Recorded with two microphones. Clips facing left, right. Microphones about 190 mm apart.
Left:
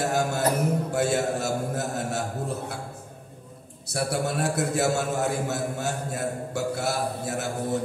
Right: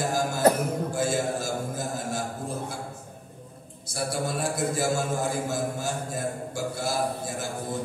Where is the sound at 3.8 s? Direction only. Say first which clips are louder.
Left 3 dB; 65° left (ahead or behind).